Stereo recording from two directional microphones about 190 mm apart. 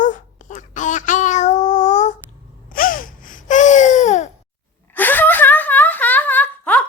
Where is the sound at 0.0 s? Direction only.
40° left (ahead or behind).